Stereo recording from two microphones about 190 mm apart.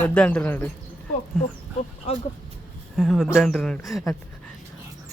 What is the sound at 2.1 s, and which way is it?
Speech, 35° left (ahead or behind).